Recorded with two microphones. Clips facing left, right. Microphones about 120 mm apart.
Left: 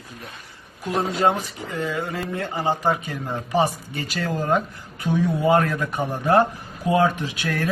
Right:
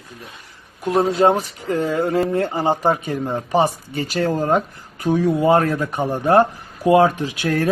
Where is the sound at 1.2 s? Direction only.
30° right (ahead or behind).